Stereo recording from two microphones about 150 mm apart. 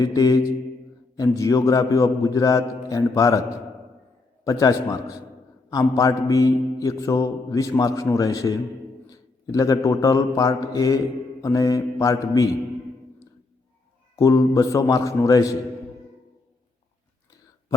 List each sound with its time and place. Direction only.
0.0 s mantra: 25° left (ahead or behind)
4.4 s mantra: 20° left (ahead or behind)
9.0 s speech: 25° left (ahead or behind)
14.2 s mantra: 20° left (ahead or behind)